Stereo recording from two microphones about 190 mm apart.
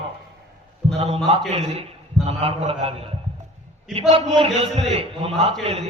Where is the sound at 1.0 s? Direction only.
35° right (ahead or behind).